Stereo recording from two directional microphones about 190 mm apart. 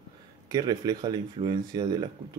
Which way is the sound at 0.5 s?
20° right (ahead or behind).